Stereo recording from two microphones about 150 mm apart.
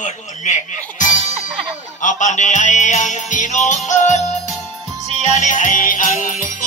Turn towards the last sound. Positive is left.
turn(degrees=60)  # may be behind; listen again after turning